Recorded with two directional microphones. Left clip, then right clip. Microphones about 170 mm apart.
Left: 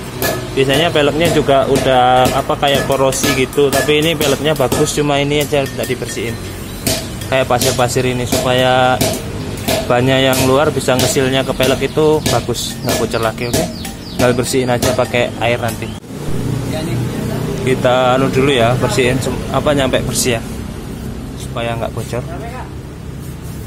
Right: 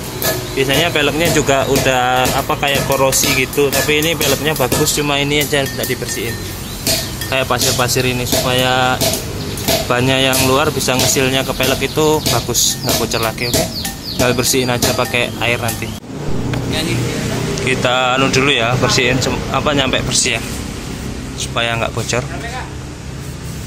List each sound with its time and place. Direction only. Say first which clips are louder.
0.6 s speech: left 2 dB; 10° left (ahead or behind)
17.6 s speech: left 3 dB; 20° left (ahead or behind)
20.2 s speech: right 1 dB; 35° left (ahead or behind)
21.5 s speech: right 3 dB; 10° left (ahead or behind)